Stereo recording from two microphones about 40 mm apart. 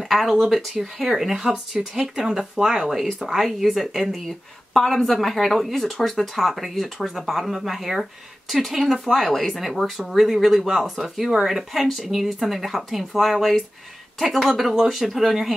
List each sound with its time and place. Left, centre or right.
0.0 s speech: centre